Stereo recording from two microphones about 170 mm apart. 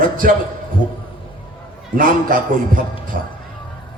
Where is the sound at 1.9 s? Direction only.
55° right (ahead or behind).